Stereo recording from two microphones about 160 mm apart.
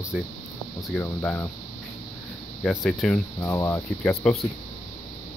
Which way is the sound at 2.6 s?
5° left (ahead or behind).